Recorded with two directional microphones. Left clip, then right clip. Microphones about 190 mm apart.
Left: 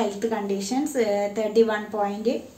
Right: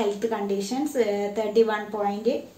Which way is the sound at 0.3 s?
15° left (ahead or behind).